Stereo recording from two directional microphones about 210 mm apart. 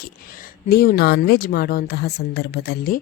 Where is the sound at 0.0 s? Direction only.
40° left (ahead or behind).